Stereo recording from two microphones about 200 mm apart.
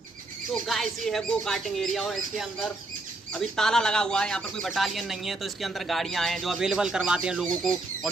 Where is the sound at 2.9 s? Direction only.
40° right (ahead or behind).